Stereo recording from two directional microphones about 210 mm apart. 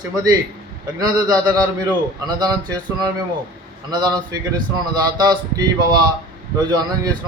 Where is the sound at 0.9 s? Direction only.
20° right (ahead or behind).